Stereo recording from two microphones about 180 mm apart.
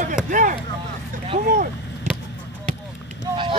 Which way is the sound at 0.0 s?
45° right (ahead or behind).